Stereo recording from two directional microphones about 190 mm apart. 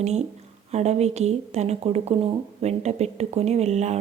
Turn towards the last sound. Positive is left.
turn(degrees=-35)  # may be behind; listen again after turning